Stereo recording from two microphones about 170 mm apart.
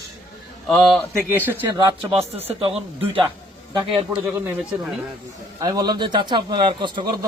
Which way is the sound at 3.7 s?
30° right (ahead or behind).